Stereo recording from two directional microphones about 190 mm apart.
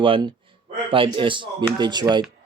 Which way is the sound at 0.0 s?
25° right (ahead or behind).